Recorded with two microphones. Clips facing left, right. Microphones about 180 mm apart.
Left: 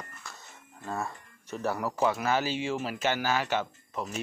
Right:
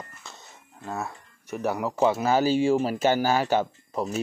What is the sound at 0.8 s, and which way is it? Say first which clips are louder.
Speech: right 2 dB; 5° right (ahead or behind).